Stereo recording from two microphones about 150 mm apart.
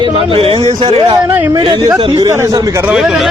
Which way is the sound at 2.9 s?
Centre (ahead or behind).